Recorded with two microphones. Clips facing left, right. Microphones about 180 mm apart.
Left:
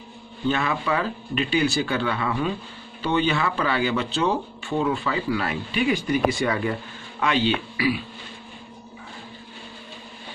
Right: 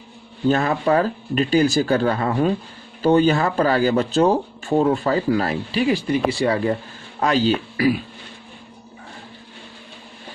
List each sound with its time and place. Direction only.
0.5 s speech: 40° right (ahead or behind)